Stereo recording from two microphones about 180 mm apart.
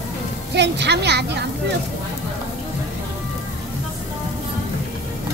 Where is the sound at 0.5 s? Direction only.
75° right (ahead or behind).